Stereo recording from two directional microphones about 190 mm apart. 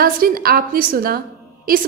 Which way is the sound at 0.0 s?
50° right (ahead or behind).